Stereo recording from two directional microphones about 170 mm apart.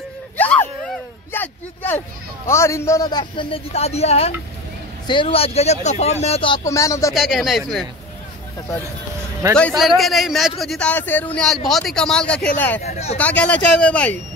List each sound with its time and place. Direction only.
0.4 s a sound: 10° left (ahead or behind); by 4.3 s 40° left (ahead or behind)
5.0 s speech: 30° left (ahead or behind)
6.6 s speech: 20° left (ahead or behind)
7.2 s speech: centre (ahead or behind)
9.6 s speech: centre (ahead or behind)
12.8 s speech: 40° left (ahead or behind)
13.2 s speech: 10° left (ahead or behind)